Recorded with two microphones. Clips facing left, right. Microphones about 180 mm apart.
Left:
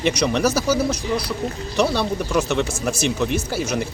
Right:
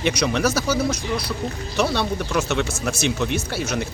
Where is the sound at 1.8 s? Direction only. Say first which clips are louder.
Left 2 dB; centre (ahead or behind).